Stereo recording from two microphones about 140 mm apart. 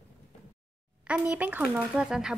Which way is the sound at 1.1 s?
10° right (ahead or behind).